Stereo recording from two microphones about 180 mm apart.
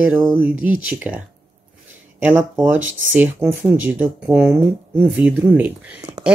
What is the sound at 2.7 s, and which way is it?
Speech, 90° right.